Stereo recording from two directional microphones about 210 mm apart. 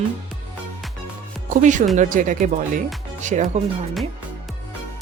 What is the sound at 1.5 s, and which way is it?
Speech, 35° right (ahead or behind).